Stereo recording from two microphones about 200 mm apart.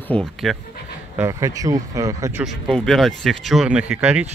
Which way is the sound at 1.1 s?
15° right (ahead or behind).